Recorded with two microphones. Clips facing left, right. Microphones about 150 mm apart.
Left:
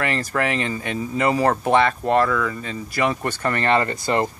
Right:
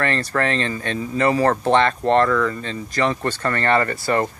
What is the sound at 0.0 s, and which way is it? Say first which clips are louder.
Speech: right 1 dB; 10° left (ahead or behind).